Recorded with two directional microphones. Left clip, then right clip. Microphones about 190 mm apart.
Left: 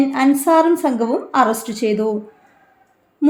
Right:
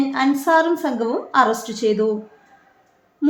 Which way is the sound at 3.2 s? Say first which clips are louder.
Left 4 dB; 25° left (ahead or behind).